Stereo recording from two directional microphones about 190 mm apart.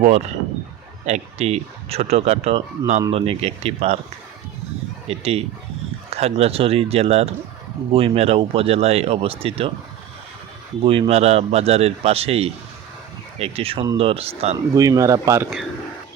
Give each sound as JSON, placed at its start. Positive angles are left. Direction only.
{"t": 0.0, "sound": "speech", "side_deg": -35}
{"t": 5.0, "sound": "speech", "side_deg": -30}
{"t": 10.8, "sound": "speech", "side_deg": -30}
{"t": 14.8, "sound": "speech", "side_deg": -15}